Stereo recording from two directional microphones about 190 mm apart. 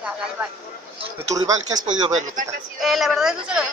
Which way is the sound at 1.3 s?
20° right (ahead or behind).